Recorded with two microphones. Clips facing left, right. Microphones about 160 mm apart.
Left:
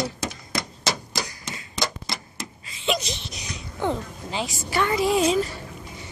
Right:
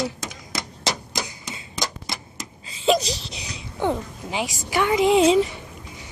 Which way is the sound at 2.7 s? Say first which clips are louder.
Right 6 dB; 35° right (ahead or behind).